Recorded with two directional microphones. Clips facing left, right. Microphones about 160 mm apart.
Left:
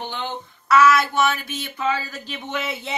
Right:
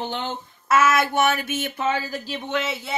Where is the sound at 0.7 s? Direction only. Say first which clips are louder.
Left 3 dB; 50° right (ahead or behind).